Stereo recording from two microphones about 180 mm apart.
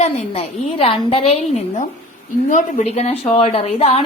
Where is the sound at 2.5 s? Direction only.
45° left (ahead or behind).